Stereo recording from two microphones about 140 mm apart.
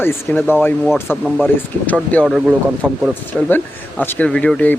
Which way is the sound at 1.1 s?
5° right (ahead or behind).